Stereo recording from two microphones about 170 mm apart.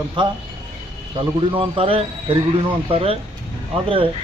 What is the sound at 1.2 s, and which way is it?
Speech, 30° right (ahead or behind).